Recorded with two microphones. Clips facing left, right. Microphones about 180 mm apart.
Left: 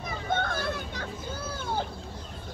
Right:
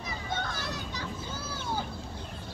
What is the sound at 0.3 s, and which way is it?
Children playing, 55° left (ahead or behind).